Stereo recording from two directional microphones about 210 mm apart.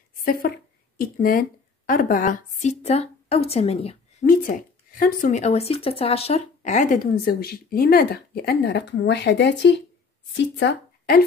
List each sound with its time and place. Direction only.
0.2 s a woman's voice: 45° left (ahead or behind); by 4.3 s 30° left (ahead or behind)
4.3 s speech: 40° left (ahead or behind)